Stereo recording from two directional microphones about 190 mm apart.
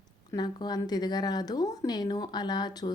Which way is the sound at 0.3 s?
20° left (ahead or behind).